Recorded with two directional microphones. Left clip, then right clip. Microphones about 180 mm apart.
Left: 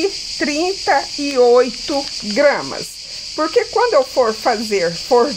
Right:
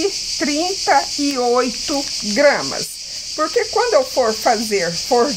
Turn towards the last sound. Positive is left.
turn(degrees=30)  # may be behind; listen again after turning